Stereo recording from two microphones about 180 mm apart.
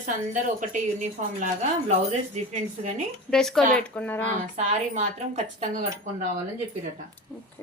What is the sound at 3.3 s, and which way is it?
Speech, 5° left (ahead or behind).